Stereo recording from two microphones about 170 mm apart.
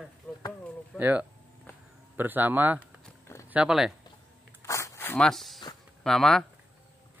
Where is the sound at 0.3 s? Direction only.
10° left (ahead or behind).